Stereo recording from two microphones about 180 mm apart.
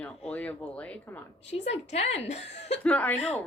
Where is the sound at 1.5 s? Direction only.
35° left (ahead or behind).